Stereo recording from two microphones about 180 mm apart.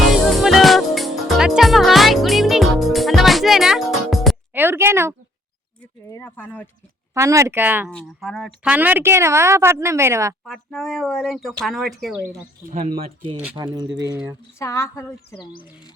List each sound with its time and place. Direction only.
0.1 s music: centre (ahead or behind)
4.5 s a sound: 10° right (ahead or behind)
5.8 s speech: 15° left (ahead or behind)
7.1 s a woman's voice: 15° right (ahead or behind)
7.9 s a woman's voice: 5° left (ahead or behind); by 10.3 s 15° right (ahead or behind)
10.4 s speech: centre (ahead or behind)
12.7 s speech: 40° right (ahead or behind)
13.9 s a woman's voice: 15° right (ahead or behind)
14.6 s a child's voice: 15° left (ahead or behind)